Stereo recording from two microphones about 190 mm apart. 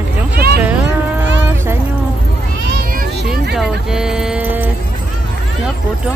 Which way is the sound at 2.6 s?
60° right (ahead or behind).